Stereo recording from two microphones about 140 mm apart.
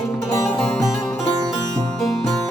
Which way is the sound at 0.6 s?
5° left (ahead or behind).